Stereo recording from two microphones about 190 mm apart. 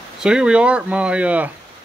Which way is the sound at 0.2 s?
5° right (ahead or behind).